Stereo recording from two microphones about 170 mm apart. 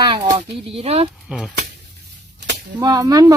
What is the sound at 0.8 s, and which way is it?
Speech, 35° right (ahead or behind).